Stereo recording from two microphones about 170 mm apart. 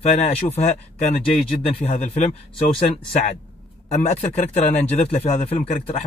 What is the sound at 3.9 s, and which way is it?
Speech, 40° left (ahead or behind).